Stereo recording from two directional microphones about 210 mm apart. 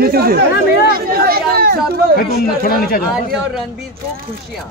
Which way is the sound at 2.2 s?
45° left (ahead or behind).